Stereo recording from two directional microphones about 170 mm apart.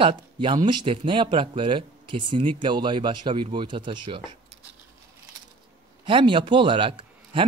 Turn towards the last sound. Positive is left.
turn(degrees=-30)  # may be behind; listen again after turning